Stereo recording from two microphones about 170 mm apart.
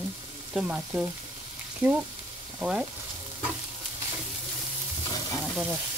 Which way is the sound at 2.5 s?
5° right (ahead or behind).